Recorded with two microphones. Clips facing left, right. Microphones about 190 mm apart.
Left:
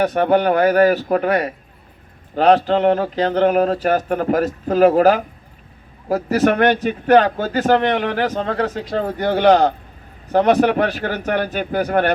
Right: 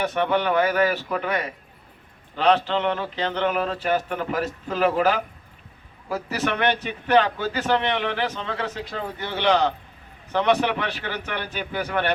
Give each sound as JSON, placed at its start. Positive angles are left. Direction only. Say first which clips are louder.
{"t": 0.0, "sound": "speech", "louder": "left 7 dB", "side_deg": 40}